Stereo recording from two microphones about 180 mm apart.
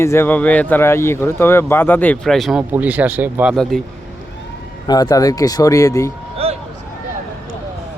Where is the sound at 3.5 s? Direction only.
5° left (ahead or behind).